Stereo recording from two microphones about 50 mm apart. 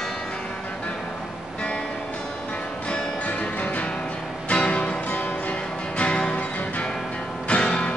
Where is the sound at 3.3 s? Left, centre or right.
Left.